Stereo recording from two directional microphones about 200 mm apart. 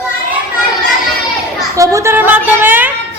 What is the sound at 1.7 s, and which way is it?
A woman's voice, 15° right (ahead or behind).